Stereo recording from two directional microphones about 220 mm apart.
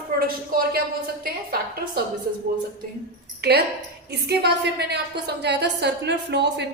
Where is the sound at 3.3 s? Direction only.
45° right (ahead or behind).